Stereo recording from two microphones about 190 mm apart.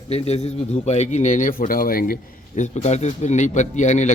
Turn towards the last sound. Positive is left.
turn(degrees=40)  # may be behind; listen again after turning